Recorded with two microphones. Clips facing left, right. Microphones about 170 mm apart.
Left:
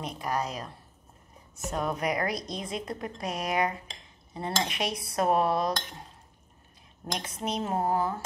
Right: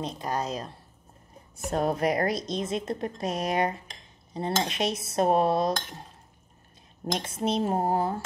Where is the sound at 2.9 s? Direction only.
25° right (ahead or behind).